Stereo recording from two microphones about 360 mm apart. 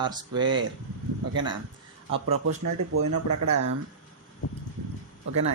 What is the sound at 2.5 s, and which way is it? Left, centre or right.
Speech, right.